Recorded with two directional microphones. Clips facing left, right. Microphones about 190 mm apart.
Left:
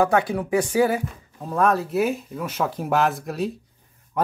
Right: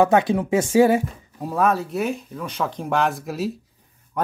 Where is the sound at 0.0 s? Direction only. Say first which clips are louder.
Right 3 dB; 20° right (ahead or behind).